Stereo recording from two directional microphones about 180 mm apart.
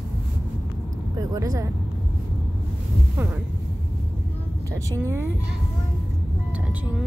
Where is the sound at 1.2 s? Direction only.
20° right (ahead or behind).